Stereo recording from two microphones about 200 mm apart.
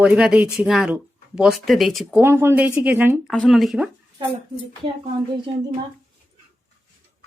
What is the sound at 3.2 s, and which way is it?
Speech, centre (ahead or behind).